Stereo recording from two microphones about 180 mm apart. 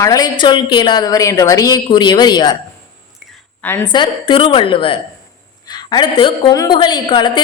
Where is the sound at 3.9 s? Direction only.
25° left (ahead or behind).